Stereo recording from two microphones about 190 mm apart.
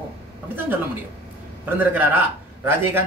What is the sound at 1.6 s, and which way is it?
A man's voice, 10° right (ahead or behind).